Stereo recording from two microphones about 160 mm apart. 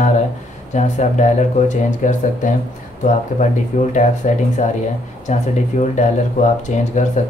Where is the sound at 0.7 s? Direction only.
50° left (ahead or behind).